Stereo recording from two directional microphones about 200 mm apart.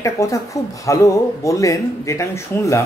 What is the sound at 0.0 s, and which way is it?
Speech, 15° left (ahead or behind).